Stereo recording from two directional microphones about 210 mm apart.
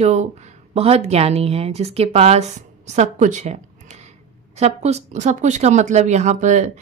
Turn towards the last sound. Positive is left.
turn(degrees=-35)  # may be behind; listen again after turning